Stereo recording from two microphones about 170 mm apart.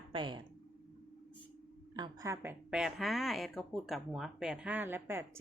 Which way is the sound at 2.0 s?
20° right (ahead or behind).